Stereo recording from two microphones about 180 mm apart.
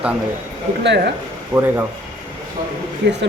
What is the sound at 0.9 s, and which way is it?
Speech, 70° right (ahead or behind).